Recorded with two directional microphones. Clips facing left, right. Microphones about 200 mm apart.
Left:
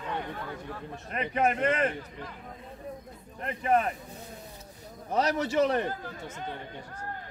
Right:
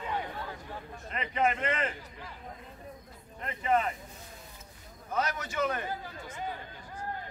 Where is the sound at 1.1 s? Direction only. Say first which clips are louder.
Left 2 dB; 45° left (ahead or behind).